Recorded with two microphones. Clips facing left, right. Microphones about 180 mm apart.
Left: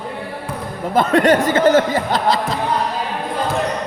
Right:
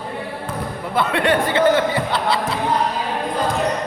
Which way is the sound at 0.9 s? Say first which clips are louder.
Left 5 dB; 45° left (ahead or behind).